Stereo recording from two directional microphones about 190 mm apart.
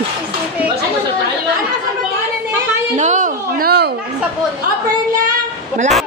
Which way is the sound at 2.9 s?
40° right (ahead or behind).